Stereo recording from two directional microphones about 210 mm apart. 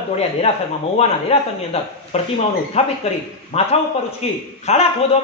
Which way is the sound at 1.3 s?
30° left (ahead or behind).